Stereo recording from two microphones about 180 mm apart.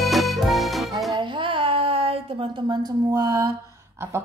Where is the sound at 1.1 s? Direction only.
25° right (ahead or behind).